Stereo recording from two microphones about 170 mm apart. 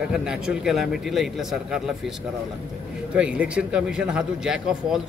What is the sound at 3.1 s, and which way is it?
Speech, 5° right (ahead or behind).